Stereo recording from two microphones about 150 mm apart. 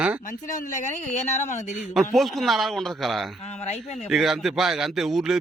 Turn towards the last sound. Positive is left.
turn(degrees=-5)  # may be behind; listen again after turning